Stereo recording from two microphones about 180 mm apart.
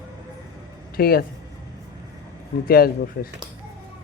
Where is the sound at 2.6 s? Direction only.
55° left (ahead or behind).